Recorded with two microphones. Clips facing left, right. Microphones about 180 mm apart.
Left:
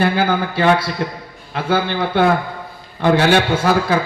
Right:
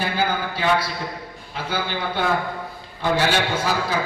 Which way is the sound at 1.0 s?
75° left (ahead or behind).